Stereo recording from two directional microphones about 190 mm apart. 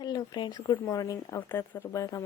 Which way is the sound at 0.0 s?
20° left (ahead or behind).